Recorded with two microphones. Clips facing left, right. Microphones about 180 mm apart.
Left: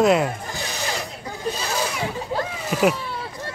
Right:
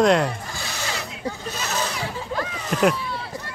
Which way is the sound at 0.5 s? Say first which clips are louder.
Left 3 dB; 20° left (ahead or behind).